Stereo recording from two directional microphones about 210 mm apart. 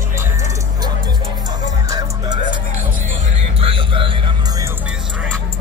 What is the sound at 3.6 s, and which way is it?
Music, 25° right (ahead or behind).